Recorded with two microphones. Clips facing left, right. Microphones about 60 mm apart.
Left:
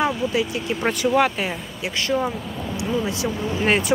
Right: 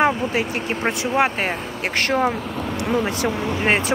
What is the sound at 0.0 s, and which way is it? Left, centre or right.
Speech, right.